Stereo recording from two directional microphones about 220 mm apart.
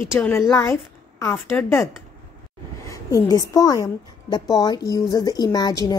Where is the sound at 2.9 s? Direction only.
15° left (ahead or behind).